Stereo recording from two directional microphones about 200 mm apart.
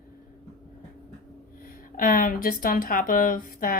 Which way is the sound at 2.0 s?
45° left (ahead or behind).